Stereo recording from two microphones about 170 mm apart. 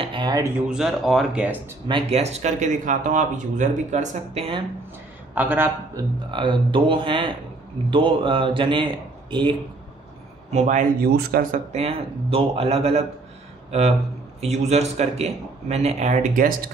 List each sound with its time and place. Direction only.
0.0 s a sound: 30° right (ahead or behind)
0.7 s speech: 5° right (ahead or behind)
1.9 s speech: 35° right (ahead or behind)
5.3 s a man's voice: 10° right (ahead or behind)
6.3 s a man's voice: 30° right (ahead or behind)
10.5 s speech: 45° right (ahead or behind); by 11.6 s 65° right (ahead or behind)
11.7 s speech: 35° right (ahead or behind)